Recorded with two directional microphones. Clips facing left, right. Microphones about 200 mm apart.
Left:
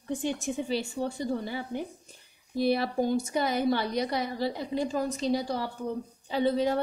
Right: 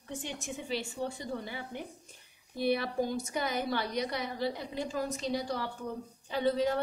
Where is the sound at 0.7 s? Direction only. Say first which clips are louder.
Left 5 dB; 35° left (ahead or behind).